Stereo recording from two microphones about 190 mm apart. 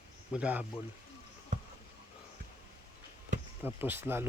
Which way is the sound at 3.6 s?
10° right (ahead or behind).